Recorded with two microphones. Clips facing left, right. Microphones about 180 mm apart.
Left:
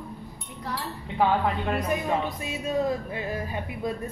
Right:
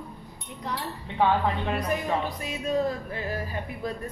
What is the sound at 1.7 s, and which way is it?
Speech, 25° left (ahead or behind).